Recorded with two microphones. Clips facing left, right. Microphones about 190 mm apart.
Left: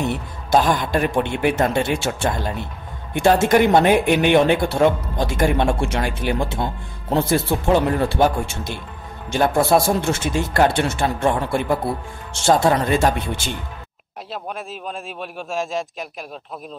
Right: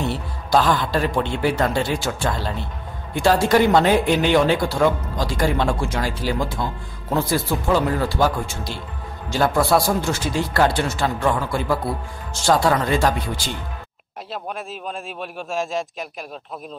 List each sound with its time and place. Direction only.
0.0 s speech: 20° left (ahead or behind)
14.3 s a man's voice: centre (ahead or behind)